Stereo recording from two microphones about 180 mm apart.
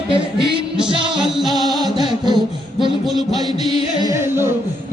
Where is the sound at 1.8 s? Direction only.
25° right (ahead or behind).